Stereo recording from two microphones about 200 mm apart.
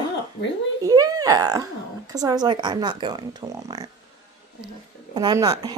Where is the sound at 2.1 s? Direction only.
20° right (ahead or behind).